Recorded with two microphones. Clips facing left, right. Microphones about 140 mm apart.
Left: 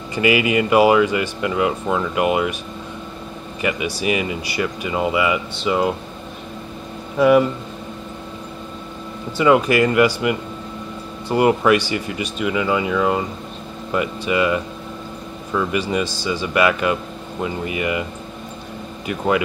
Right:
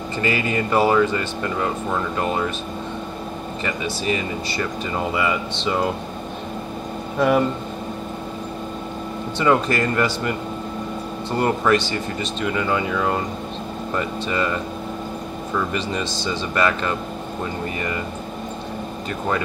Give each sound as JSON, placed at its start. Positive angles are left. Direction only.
{"t": 0.1, "sound": "speech", "side_deg": 10}
{"t": 3.6, "sound": "speech", "side_deg": 10}
{"t": 7.2, "sound": "speech", "side_deg": 5}
{"t": 9.4, "sound": "speech", "side_deg": 10}
{"t": 19.0, "sound": "speech", "side_deg": 10}